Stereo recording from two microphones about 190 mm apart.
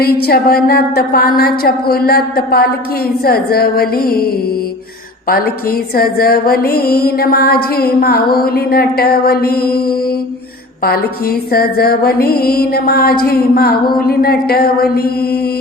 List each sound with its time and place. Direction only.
0.0 s mantra: 55° left (ahead or behind)
6.0 s mantra: 50° left (ahead or behind)
11.5 s mantra: 55° left (ahead or behind)